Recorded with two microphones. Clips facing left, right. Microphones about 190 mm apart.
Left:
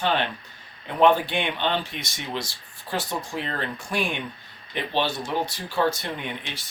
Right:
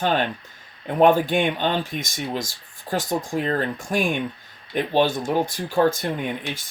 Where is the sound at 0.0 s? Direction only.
45° right (ahead or behind).